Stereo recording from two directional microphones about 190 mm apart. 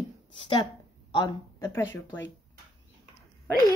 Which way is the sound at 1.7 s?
10° left (ahead or behind).